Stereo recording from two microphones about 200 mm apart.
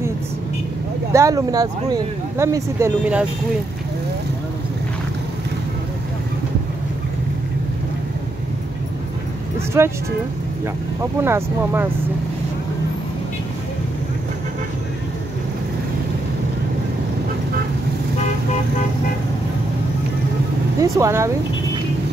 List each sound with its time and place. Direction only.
1.1 s speech: 15° right (ahead or behind)
9.8 s speech: 15° right (ahead or behind)
11.0 s speech: 10° right (ahead or behind)
20.8 s speech: 15° right (ahead or behind)